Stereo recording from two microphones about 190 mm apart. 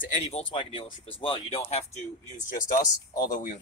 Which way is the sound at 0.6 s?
30° left (ahead or behind).